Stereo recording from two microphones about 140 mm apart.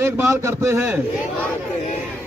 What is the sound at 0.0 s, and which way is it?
A man's voice, 20° right (ahead or behind).